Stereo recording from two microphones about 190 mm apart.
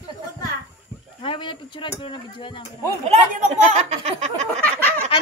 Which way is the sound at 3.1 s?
40° right (ahead or behind).